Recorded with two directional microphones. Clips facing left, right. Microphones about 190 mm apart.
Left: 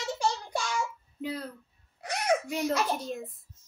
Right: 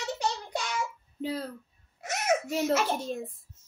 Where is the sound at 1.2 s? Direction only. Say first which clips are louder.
Right 2 dB; 30° right (ahead or behind).